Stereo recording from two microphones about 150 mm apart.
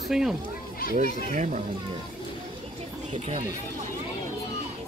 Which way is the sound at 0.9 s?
55° right (ahead or behind).